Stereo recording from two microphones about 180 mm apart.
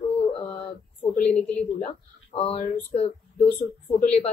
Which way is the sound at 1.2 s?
5° left (ahead or behind).